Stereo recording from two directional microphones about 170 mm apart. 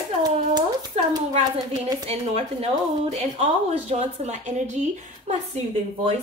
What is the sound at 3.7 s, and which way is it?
Speech, 40° right (ahead or behind).